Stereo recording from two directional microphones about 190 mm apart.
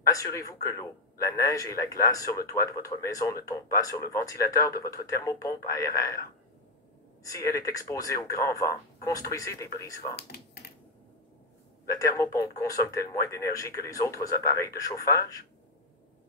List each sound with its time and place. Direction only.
0.0 s speech: 15° left (ahead or behind)
7.2 s speech: 15° left (ahead or behind)
10.1 s speech: 55° left (ahead or behind)
11.9 s speech: 15° left (ahead or behind)